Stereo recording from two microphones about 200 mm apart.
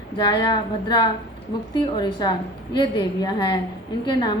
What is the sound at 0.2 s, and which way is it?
A woman's voice, 20° left (ahead or behind).